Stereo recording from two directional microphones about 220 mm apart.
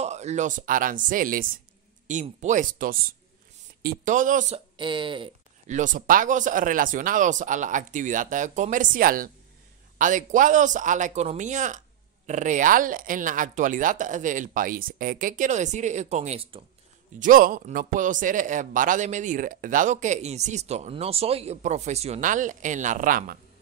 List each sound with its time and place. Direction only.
0.0 s speech: 30° right (ahead or behind)
4.7 s speech: 20° right (ahead or behind)
17.2 s speech: 40° right (ahead or behind)